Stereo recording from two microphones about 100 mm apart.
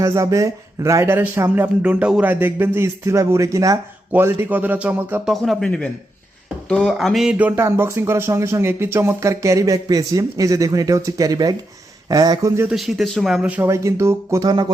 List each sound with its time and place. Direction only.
0.0 s speech: 30° right (ahead or behind)
4.1 s speech: 15° right (ahead or behind)
5.2 s speech: centre (ahead or behind)
7.3 s speech: 15° right (ahead or behind)
7.6 s speech: 25° right (ahead or behind)
12.7 s speech: centre (ahead or behind)
13.5 s speech: 25° right (ahead or behind)
14.4 s music: 45° right (ahead or behind)